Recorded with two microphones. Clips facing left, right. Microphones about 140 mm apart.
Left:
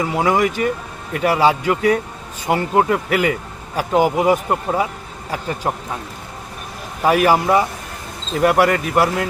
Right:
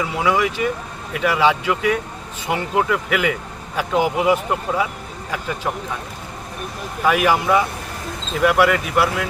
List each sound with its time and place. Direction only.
0.0 s speech: 45° left (ahead or behind)
7.0 s speech: 40° left (ahead or behind)